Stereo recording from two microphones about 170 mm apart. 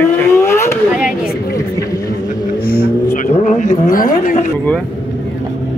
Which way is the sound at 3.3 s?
45° left (ahead or behind).